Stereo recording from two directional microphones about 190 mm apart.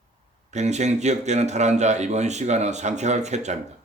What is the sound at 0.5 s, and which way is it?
A man's voice, 35° right (ahead or behind).